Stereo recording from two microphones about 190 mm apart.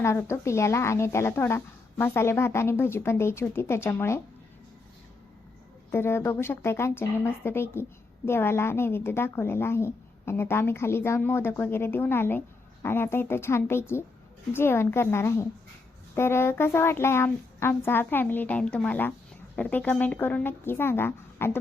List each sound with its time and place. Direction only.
0.0 s a woman's voice: 15° left (ahead or behind)
5.9 s a woman's voice: 10° left (ahead or behind)